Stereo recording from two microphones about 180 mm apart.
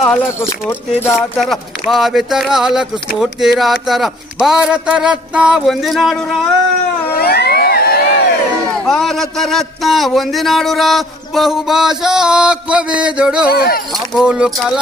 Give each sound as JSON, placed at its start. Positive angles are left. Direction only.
{"t": 0.0, "sound": "speech", "side_deg": 15}
{"t": 1.4, "sound": "speech", "side_deg": 0}
{"t": 7.2, "sound": "crowd", "side_deg": 60}
{"t": 8.8, "sound": "speech", "side_deg": 0}
{"t": 13.5, "sound": "speech", "side_deg": 60}
{"t": 14.2, "sound": "speech", "side_deg": -5}